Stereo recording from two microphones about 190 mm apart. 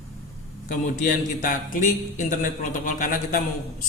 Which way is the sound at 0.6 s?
45° left (ahead or behind).